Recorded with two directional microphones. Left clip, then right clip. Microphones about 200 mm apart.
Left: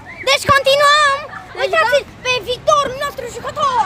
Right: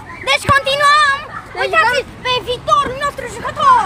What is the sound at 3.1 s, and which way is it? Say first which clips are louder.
Speech: right 1 dB; 30° left (ahead or behind).